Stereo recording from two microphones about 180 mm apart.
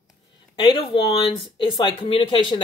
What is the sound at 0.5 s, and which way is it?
Speech, 25° left (ahead or behind).